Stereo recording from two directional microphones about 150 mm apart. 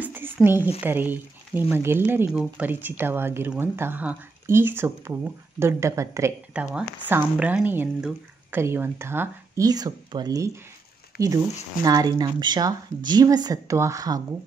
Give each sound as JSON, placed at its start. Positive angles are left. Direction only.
{"t": 0.0, "sound": "a sound", "side_deg": -15}
{"t": 0.7, "sound": "speech", "side_deg": -10}
{"t": 6.5, "sound": "speech", "side_deg": -5}